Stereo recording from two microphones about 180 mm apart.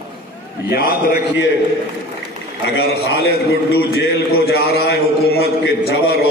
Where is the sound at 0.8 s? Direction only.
55° left (ahead or behind).